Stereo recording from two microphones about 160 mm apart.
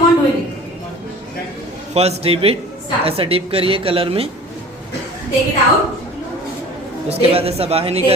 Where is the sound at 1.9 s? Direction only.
40° right (ahead or behind).